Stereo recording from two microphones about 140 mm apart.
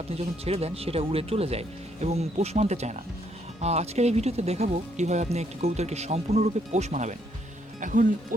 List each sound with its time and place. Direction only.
0.1 s speech: 45° right (ahead or behind)
7.8 s speech: 70° right (ahead or behind)